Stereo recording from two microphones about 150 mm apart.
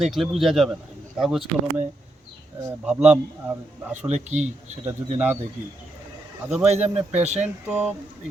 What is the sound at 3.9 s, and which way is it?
Speech, 50° right (ahead or behind).